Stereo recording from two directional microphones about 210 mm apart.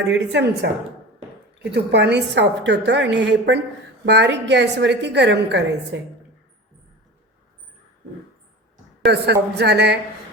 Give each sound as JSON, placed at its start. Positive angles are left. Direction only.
{"t": 0.1, "sound": "a woman's voice", "side_deg": -55}
{"t": 9.0, "sound": "a woman's voice", "side_deg": -50}